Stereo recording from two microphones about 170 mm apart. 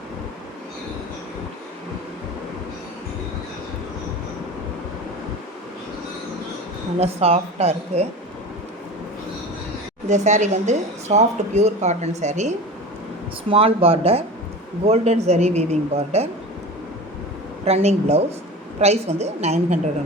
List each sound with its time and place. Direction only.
7.0 s speech: 35° right (ahead or behind)
10.1 s speech: 45° right (ahead or behind)
17.7 s speech: 40° right (ahead or behind)